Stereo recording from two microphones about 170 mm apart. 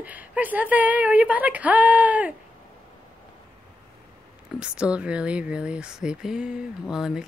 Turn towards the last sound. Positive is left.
turn(degrees=-5)  # may be behind; listen again after turning